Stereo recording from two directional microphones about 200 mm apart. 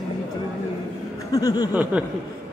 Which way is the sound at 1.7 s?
10° right (ahead or behind).